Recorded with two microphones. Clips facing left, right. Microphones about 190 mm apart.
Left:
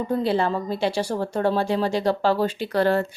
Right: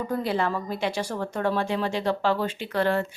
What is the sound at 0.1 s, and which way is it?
Speech, 30° left (ahead or behind).